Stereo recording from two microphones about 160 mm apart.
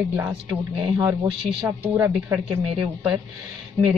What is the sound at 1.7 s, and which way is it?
Speech, 15° right (ahead or behind).